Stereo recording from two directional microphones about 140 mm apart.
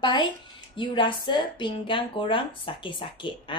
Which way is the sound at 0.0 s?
35° left (ahead or behind).